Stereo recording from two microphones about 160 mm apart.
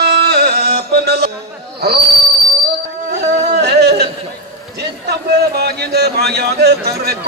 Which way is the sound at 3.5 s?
90° right.